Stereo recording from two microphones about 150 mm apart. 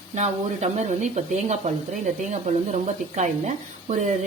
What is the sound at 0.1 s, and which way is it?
A woman's voice, 50° right (ahead or behind).